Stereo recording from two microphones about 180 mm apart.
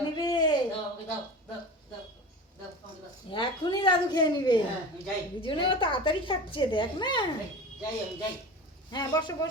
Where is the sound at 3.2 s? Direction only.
25° left (ahead or behind).